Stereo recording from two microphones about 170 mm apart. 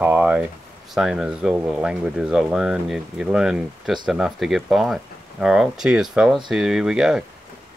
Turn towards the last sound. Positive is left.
turn(degrees=-5)  # may be behind; listen again after turning